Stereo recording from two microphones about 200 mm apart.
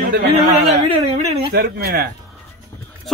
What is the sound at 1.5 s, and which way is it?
Speech, 50° right (ahead or behind).